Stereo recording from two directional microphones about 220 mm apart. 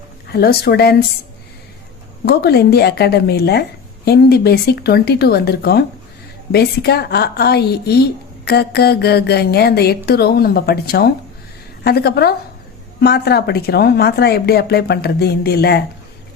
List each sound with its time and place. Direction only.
0.3 s speech: 45° left (ahead or behind)
2.2 s speech: 45° left (ahead or behind)